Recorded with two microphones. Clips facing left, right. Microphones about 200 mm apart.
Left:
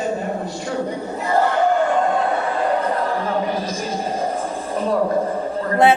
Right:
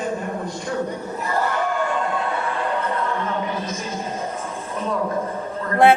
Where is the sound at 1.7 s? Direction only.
50° left (ahead or behind).